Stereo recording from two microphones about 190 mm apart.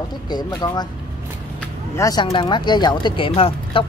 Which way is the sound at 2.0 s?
20° left (ahead or behind).